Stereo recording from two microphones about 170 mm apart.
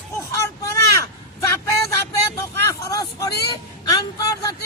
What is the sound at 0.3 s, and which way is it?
Vehicle, 15° left (ahead or behind).